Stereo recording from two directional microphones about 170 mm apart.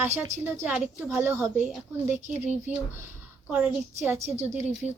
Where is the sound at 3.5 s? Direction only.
5° right (ahead or behind).